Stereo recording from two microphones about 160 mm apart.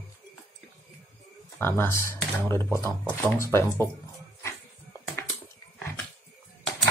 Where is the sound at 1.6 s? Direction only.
15° left (ahead or behind).